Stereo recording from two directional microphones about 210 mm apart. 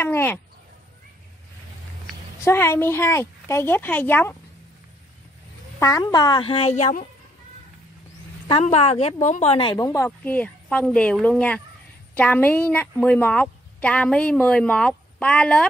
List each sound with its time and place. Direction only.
0.0 s a sound: 10° left (ahead or behind)
2.4 s a woman's voice: 10° left (ahead or behind)
5.8 s a woman's voice: 15° left (ahead or behind); by 7.1 s 35° left (ahead or behind)
8.5 s a woman's voice: 30° left (ahead or behind); by 15.6 s 5° left (ahead or behind)